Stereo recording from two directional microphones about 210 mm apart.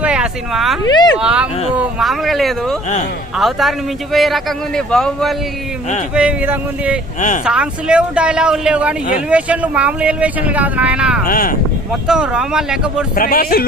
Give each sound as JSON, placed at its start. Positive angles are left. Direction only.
{"t": 0.0, "sound": "speech", "side_deg": -5}
{"t": 0.9, "sound": "speech", "side_deg": 20}
{"t": 1.2, "sound": "speech", "side_deg": -5}
{"t": 6.1, "sound": "speech", "side_deg": -5}
{"t": 7.2, "sound": "speech", "side_deg": 35}
{"t": 7.4, "sound": "speech", "side_deg": -5}
{"t": 11.3, "sound": "a man's voice", "side_deg": 40}
{"t": 11.9, "sound": "speech", "side_deg": -5}
{"t": 13.1, "sound": "a man's voice", "side_deg": 45}